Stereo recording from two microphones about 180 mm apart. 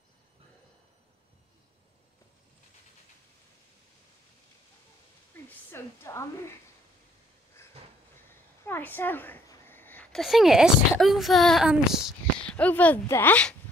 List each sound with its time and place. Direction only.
5.7 s a woman's voice: 15° left (ahead or behind)
8.6 s a sound: 10° left (ahead or behind)
10.2 s speech: centre (ahead or behind)